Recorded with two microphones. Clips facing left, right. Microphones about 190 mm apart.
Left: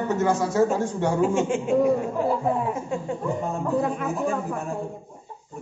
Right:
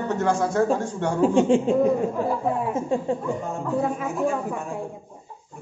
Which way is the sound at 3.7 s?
5° right (ahead or behind).